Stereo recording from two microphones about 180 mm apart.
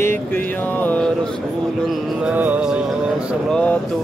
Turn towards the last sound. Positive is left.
turn(degrees=5)  # may be behind; listen again after turning